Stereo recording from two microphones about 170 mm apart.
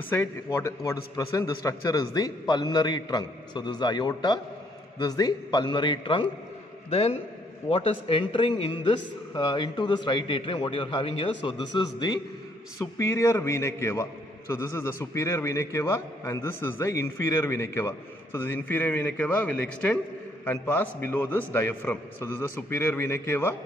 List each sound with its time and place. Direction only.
0.1 s a man's voice: 15° left (ahead or behind)